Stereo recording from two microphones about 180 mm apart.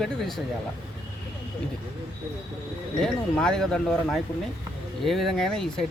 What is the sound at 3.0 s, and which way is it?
Speech, 5° left (ahead or behind).